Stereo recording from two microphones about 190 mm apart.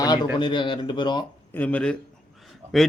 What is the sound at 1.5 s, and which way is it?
Speech, 10° left (ahead or behind).